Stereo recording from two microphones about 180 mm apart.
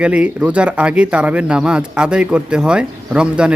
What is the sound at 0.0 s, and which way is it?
A man's voice, 5° right (ahead or behind).